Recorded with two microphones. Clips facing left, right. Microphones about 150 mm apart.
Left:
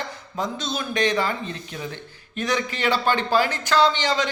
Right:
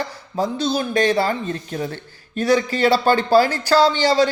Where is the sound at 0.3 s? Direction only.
35° right (ahead or behind).